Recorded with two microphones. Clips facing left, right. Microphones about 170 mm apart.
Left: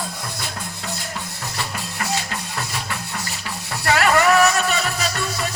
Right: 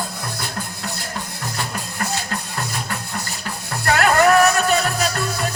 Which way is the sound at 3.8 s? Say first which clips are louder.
Right 2 dB; 50° right (ahead or behind).